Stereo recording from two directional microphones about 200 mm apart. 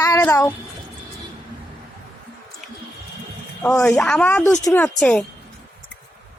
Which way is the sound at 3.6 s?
5° left (ahead or behind).